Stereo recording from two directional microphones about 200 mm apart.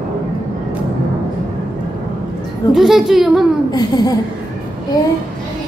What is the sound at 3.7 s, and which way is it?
Speech, 20° left (ahead or behind).